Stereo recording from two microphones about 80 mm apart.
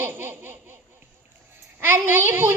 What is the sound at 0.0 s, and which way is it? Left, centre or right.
Baby laughter, right.